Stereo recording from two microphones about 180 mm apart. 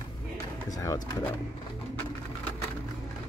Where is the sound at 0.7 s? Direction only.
20° left (ahead or behind).